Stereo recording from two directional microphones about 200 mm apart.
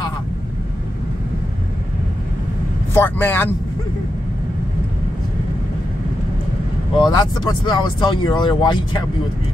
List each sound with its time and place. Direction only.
2.9 s speech: 10° left (ahead or behind)
7.0 s speech: 20° left (ahead or behind)